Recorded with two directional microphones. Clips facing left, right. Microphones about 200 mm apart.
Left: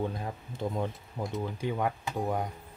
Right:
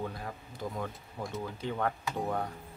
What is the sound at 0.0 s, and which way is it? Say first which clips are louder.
Speech: left 4 dB; 25° left (ahead or behind).